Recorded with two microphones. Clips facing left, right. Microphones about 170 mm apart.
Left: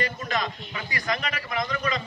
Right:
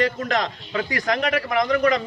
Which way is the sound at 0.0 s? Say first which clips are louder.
Right 6 dB; 80° right.